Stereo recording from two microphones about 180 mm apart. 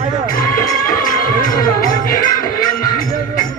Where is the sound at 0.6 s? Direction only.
50° left (ahead or behind).